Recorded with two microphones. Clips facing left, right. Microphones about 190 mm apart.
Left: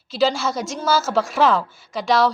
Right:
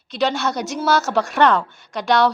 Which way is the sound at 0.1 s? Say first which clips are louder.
Left 1 dB; centre (ahead or behind).